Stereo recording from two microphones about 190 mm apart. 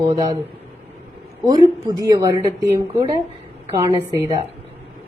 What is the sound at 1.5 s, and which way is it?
A woman's voice, 20° right (ahead or behind).